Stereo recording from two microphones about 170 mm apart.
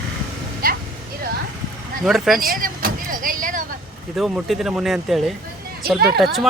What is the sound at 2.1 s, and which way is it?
Speech, centre (ahead or behind).